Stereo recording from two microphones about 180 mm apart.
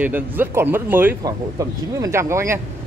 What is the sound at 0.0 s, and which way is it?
Speech, 10° right (ahead or behind).